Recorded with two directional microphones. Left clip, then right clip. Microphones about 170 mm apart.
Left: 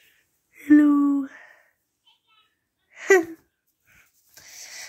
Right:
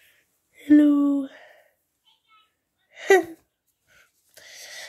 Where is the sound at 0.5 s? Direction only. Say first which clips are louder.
Even; 10° right (ahead or behind).